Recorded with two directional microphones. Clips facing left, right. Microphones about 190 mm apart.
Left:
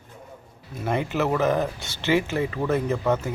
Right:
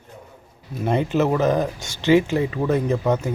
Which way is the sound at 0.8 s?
20° right (ahead or behind).